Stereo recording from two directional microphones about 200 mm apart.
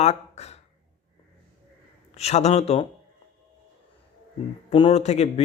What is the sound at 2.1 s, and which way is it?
Speech, 35° left (ahead or behind).